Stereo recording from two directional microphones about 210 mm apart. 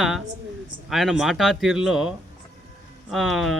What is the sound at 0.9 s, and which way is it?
Speech, centre (ahead or behind).